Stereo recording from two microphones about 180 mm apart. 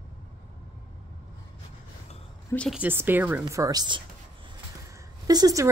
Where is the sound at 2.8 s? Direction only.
10° right (ahead or behind).